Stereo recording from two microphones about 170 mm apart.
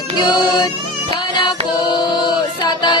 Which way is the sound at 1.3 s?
25° left (ahead or behind).